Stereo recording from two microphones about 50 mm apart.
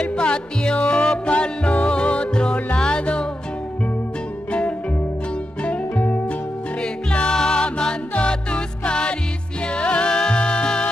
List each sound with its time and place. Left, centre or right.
0.0 s music: left
4.5 s music: left